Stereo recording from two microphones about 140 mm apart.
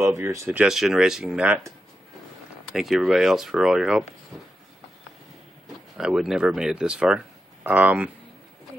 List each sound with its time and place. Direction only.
0.0 s speech: 20° right (ahead or behind)
0.6 s speech: 5° right (ahead or behind)
2.7 s speech: centre (ahead or behind)
5.9 s speech: 5° right (ahead or behind)